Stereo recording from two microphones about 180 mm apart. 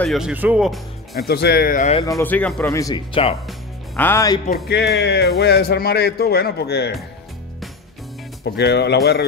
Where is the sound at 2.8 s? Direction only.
25° left (ahead or behind).